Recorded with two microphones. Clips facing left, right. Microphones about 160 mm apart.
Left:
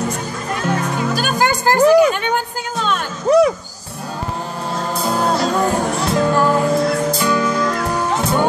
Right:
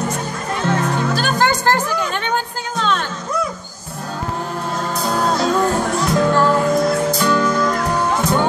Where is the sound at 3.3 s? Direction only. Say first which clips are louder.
Left 12 dB; 80° left.